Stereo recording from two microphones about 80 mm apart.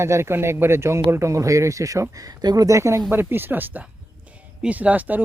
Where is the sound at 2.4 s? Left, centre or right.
Right.